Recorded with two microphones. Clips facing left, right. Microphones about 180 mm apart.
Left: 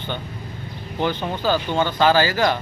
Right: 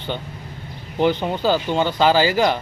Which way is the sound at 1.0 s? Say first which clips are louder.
Right 4 dB; 10° right (ahead or behind).